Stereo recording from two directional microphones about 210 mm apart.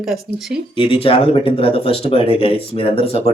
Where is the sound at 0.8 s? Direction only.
25° left (ahead or behind).